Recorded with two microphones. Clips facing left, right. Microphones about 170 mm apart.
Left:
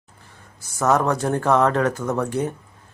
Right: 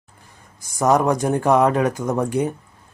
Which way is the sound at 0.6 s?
15° right (ahead or behind).